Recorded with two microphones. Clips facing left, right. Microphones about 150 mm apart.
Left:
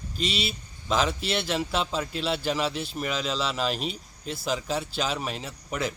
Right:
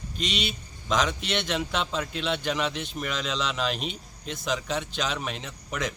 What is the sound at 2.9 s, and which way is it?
Speech, 5° left (ahead or behind).